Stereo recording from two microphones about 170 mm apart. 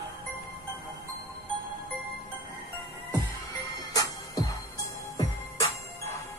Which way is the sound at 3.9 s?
20° left (ahead or behind).